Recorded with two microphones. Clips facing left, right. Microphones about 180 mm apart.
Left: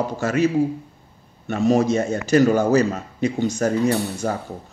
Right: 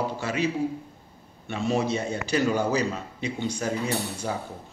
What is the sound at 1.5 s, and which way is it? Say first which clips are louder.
Speech: left 8 dB; 45° left (ahead or behind).